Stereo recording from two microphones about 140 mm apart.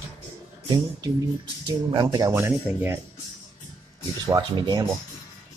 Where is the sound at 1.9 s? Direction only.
30° right (ahead or behind).